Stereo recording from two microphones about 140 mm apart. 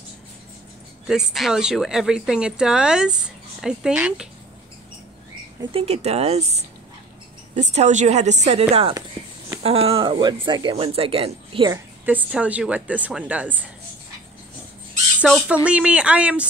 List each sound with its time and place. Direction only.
1.0 s speech: centre (ahead or behind)
5.6 s a woman's voice: 40° right (ahead or behind)
10.9 s a woman's voice: 45° right (ahead or behind)
12.1 s a woman's voice: 10° right (ahead or behind)
15.2 s speech: 5° left (ahead or behind)
15.5 s a woman's voice: 10° right (ahead or behind)